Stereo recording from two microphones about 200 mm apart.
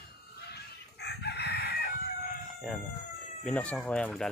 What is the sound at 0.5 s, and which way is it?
Chicken, 55° left (ahead or behind).